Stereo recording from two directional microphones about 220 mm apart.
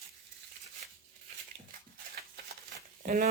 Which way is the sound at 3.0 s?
40° right (ahead or behind).